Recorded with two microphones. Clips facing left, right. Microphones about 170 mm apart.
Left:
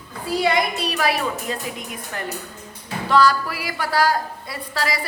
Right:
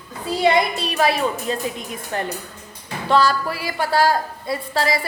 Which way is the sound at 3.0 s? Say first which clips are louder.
Even; 25° right (ahead or behind).